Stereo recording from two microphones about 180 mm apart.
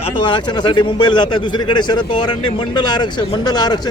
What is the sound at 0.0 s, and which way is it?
A man's voice, 25° left (ahead or behind).